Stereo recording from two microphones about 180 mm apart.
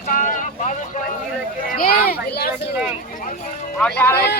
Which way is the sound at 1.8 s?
55° left (ahead or behind).